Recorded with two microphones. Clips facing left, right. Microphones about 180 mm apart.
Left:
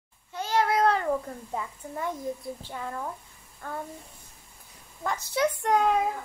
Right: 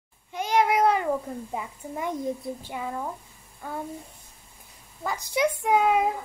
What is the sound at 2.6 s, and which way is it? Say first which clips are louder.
A child's voice: right 3 dB; 10° right (ahead or behind).